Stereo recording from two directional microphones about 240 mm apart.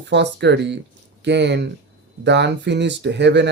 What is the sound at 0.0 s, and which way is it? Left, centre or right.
Speech, right.